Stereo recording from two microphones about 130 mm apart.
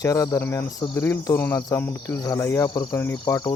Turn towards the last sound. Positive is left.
turn(degrees=25)  # may be behind; listen again after turning